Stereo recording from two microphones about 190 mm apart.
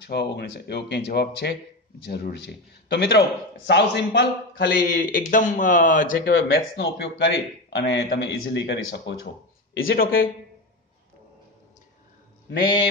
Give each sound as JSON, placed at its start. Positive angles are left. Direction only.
{"t": 0.0, "sound": "a man's voice", "side_deg": 60}
{"t": 5.0, "sound": "speech", "side_deg": 45}
{"t": 6.6, "sound": "a man's voice", "side_deg": 70}
{"t": 9.8, "sound": "speech", "side_deg": 50}